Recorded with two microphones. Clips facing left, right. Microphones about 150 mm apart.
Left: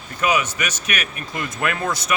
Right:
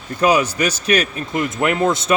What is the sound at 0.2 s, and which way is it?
Speech, 35° right (ahead or behind).